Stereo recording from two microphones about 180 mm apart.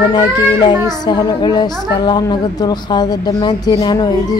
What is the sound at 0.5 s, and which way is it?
A woman's voice, 25° left (ahead or behind).